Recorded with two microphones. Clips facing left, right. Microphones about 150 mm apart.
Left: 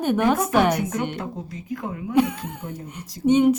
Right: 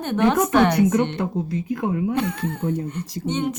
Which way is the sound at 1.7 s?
65° right (ahead or behind).